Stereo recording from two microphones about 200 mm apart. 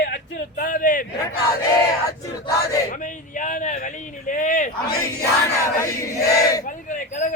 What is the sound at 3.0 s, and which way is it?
Speech, 40° left (ahead or behind).